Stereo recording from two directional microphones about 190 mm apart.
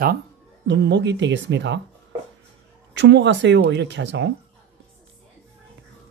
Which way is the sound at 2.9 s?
70° right (ahead or behind).